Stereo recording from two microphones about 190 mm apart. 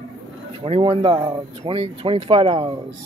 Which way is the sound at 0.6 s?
30° right (ahead or behind).